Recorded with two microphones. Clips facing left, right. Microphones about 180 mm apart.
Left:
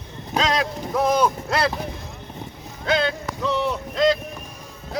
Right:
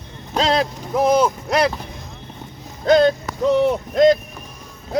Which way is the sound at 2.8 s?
45° right (ahead or behind).